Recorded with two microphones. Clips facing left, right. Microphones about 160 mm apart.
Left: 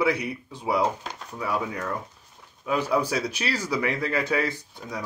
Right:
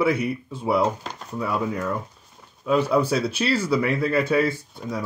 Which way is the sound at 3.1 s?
15° left (ahead or behind).